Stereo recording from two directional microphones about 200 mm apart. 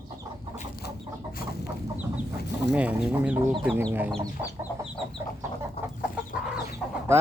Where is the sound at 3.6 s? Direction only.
5° right (ahead or behind).